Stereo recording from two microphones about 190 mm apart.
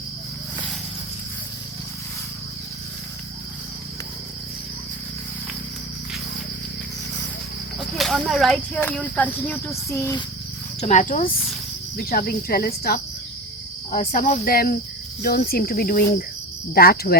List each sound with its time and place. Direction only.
7.9 s speech: centre (ahead or behind); by 10.2 s 15° left (ahead or behind)
10.8 s speech: 35° left (ahead or behind)
12.0 s speech: 50° left (ahead or behind)
14.1 s speech: 45° left (ahead or behind)